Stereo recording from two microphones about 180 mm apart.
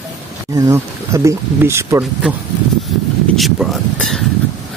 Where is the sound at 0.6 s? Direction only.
15° right (ahead or behind).